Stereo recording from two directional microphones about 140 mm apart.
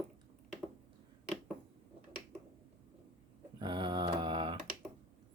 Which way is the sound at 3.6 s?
35° right (ahead or behind).